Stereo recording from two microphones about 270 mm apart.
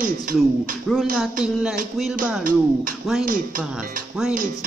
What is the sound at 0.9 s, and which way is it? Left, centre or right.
Speech, centre.